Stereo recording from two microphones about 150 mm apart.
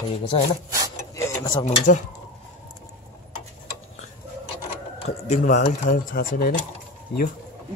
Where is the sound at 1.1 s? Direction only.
20° left (ahead or behind).